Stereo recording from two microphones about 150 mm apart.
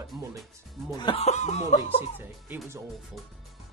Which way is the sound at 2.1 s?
10° right (ahead or behind).